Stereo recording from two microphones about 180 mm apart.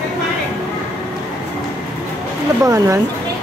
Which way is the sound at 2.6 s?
15° right (ahead or behind).